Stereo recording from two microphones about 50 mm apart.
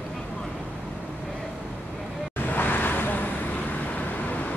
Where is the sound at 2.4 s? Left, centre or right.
Left.